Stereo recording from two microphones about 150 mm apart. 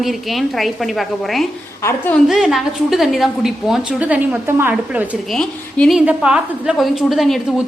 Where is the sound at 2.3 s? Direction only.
Centre (ahead or behind).